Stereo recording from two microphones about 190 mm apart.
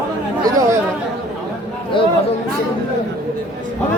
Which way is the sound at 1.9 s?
25° left (ahead or behind).